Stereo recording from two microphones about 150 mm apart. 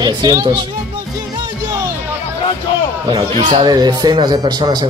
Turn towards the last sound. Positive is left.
turn(degrees=-30)  # may be behind; listen again after turning